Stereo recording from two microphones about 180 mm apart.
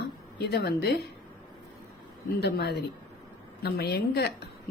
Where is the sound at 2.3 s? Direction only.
65° left (ahead or behind).